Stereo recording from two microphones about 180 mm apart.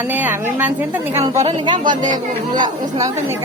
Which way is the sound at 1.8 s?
45° right (ahead or behind).